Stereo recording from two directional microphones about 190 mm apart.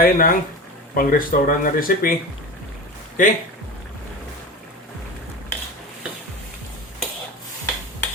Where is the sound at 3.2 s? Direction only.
45° left (ahead or behind).